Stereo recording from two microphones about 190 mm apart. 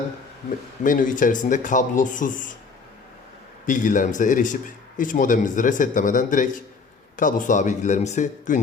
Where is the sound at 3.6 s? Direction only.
45° left (ahead or behind).